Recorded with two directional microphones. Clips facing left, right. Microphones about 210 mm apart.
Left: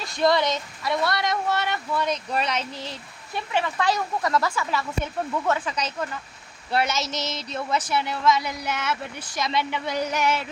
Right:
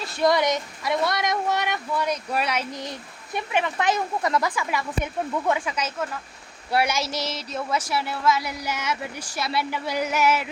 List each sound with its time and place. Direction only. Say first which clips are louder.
0.2 s speech: right 1 dB; 15° right (ahead or behind)